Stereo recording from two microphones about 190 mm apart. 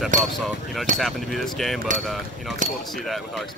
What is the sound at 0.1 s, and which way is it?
Speech, 40° right (ahead or behind).